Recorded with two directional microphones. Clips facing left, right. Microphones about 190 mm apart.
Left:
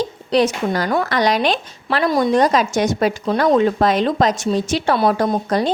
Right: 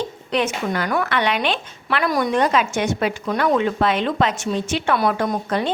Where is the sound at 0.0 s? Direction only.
35° left (ahead or behind).